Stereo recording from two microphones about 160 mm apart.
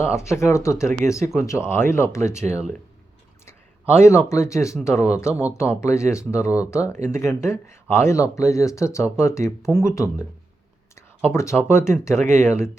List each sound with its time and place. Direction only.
0.0 s speech: 15° left (ahead or behind)